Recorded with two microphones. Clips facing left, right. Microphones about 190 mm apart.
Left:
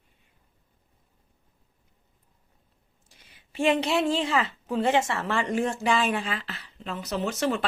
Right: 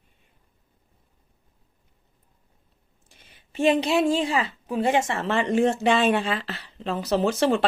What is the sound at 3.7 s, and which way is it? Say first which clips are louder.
A woman's voice: right 2 dB; 15° right (ahead or behind).